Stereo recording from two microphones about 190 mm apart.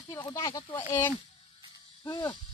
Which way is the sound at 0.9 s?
10° left (ahead or behind).